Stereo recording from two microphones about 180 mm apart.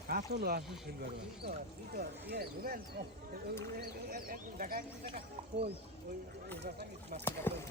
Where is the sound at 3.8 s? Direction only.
55° right (ahead or behind).